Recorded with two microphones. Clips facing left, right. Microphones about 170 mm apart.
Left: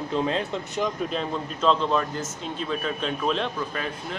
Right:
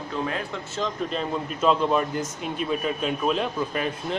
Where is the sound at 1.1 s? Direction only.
5° right (ahead or behind).